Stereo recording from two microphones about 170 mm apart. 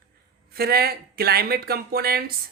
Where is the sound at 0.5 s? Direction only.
65° right (ahead or behind).